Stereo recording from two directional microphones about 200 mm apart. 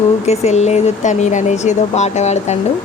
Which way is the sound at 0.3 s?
35° left (ahead or behind).